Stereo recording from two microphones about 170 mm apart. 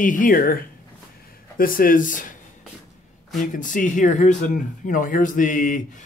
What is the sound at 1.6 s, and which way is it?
Speech, 55° left (ahead or behind).